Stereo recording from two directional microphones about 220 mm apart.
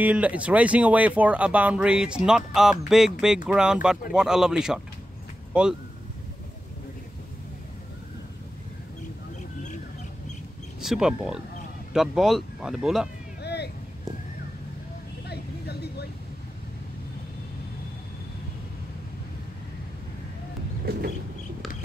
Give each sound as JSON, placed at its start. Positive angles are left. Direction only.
{"t": 0.0, "sound": "speech", "side_deg": -5}
{"t": 10.8, "sound": "speech", "side_deg": 0}
{"t": 13.4, "sound": "vehicle", "side_deg": 50}
{"t": 15.2, "sound": "vehicle", "side_deg": 50}